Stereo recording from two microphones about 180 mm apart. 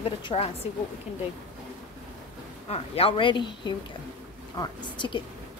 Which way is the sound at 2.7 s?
30° left (ahead or behind).